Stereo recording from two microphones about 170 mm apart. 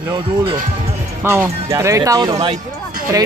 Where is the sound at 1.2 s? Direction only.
15° right (ahead or behind).